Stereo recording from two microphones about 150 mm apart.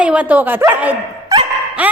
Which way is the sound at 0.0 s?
10° right (ahead or behind).